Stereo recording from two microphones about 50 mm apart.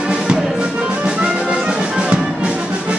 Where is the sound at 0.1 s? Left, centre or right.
Centre.